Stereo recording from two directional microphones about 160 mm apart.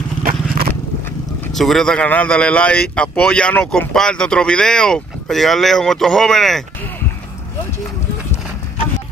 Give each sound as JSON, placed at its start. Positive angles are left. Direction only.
{"t": 0.2, "sound": "vehicle", "side_deg": -60}
{"t": 1.5, "sound": "speech", "side_deg": 0}